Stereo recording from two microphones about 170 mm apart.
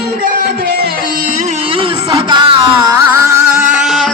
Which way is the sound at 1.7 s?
30° right (ahead or behind).